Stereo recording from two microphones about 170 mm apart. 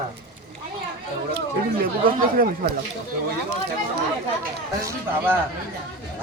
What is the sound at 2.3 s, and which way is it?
Speech, 55° right (ahead or behind).